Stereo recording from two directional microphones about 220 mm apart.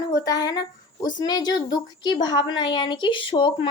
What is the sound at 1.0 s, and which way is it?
Speech, 20° left (ahead or behind).